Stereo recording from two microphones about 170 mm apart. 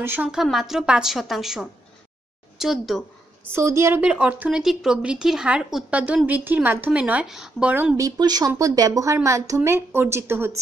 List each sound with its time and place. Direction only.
0.0 s a woman's voice: 10° right (ahead or behind)
3.5 s speech: 15° right (ahead or behind)
8.2 s speech: 20° right (ahead or behind)